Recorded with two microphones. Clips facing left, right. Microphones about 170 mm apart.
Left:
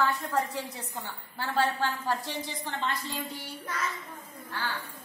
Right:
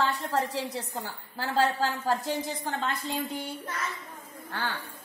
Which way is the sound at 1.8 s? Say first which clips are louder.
Right 2 dB; 45° right (ahead or behind).